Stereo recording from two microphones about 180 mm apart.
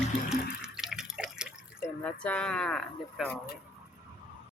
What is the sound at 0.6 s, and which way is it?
Drip, 5° right (ahead or behind).